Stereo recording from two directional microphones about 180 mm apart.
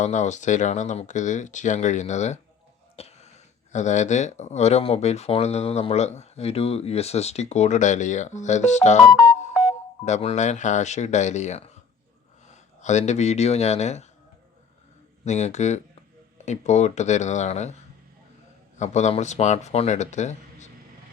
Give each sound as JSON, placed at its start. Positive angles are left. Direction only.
{"t": 0.0, "sound": "speech", "side_deg": 40}
{"t": 15.2, "sound": "speech", "side_deg": 40}
{"t": 18.8, "sound": "speech", "side_deg": 40}